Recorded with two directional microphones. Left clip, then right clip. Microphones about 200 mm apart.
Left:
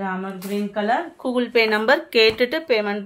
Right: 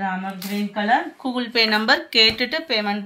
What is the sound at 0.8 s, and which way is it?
Speech, 50° left (ahead or behind).